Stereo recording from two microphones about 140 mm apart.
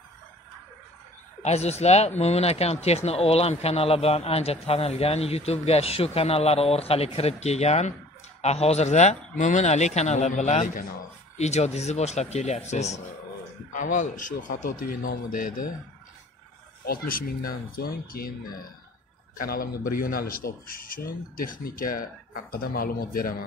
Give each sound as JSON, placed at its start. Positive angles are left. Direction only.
{"t": 1.4, "sound": "speech", "side_deg": 50}
{"t": 13.7, "sound": "a man's voice", "side_deg": 65}
{"t": 16.8, "sound": "a man's voice", "side_deg": 90}
{"t": 19.3, "sound": "a man's voice", "side_deg": 90}